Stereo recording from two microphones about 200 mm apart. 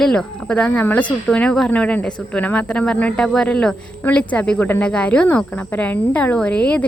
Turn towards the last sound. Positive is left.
turn(degrees=5)  # may be behind; listen again after turning